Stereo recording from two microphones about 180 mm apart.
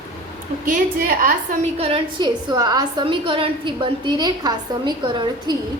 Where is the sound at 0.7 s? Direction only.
50° right (ahead or behind).